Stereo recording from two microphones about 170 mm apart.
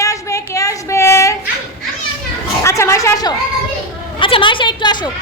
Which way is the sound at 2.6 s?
15° left (ahead or behind).